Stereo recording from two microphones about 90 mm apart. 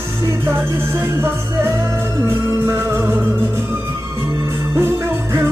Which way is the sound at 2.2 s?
25° right (ahead or behind).